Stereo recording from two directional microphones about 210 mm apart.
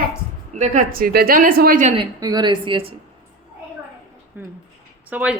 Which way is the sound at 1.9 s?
20° right (ahead or behind).